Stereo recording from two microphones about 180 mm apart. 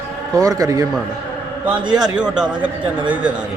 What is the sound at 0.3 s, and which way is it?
Speech, 20° right (ahead or behind).